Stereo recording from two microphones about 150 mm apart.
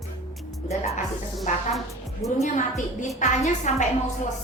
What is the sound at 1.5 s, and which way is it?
A woman's voice, 55° left (ahead or behind).